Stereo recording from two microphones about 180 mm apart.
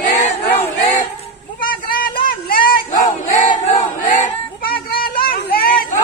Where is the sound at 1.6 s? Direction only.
55° left (ahead or behind).